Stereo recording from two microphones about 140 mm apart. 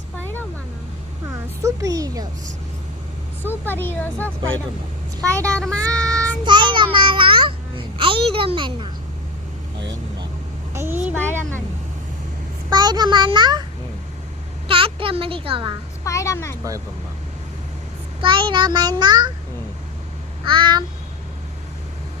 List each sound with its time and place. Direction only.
1.3 s a woman's voice: 25° right (ahead or behind)
3.7 s speech: 15° left (ahead or behind)
5.3 s speech: 20° right (ahead or behind)
5.5 s child singing: 10° left (ahead or behind)
6.4 s babbling: 35° right (ahead or behind)
10.8 s a sound: 15° right (ahead or behind)
12.7 s a child's voice: 30° right (ahead or behind)
14.7 s speech: 40° right (ahead or behind)
16.0 s speech: 20° left (ahead or behind)
18.2 s a child's voice: 35° right (ahead or behind)
20.5 s a child's voice: 35° right (ahead or behind)